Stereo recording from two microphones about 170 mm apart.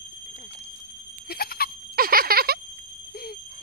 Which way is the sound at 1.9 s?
60° right (ahead or behind).